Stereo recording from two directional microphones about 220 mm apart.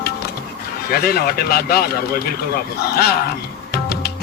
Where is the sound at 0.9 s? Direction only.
45° left (ahead or behind).